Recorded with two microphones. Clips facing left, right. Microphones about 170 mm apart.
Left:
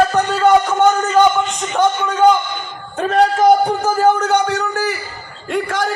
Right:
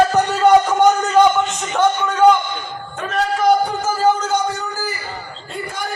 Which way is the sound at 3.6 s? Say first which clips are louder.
Left 3 dB; 60° left (ahead or behind).